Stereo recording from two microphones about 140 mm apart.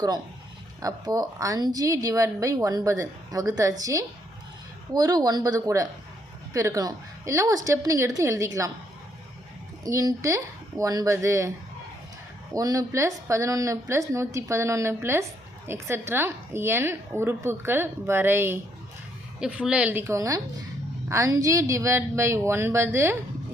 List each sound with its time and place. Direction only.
0.8 s a woman's voice: 25° right (ahead or behind)
9.8 s a woman's voice: 25° right (ahead or behind)
12.5 s a woman's voice: 25° right (ahead or behind)